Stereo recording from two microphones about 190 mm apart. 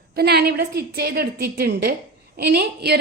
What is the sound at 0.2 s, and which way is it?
A woman's voice, 60° right (ahead or behind).